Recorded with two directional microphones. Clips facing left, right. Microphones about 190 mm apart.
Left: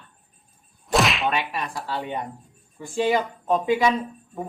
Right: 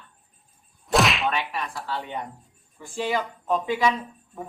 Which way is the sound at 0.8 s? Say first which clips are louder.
Even; centre (ahead or behind).